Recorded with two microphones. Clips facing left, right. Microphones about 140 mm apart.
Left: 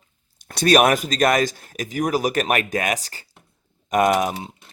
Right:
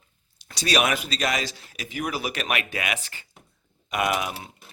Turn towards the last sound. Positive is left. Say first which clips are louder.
# left 8 dB
turn(degrees=45)  # may be behind; listen again after turning